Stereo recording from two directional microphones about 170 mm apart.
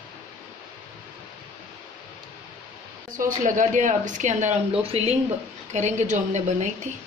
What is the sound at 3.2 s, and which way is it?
A woman's voice, 50° right (ahead or behind).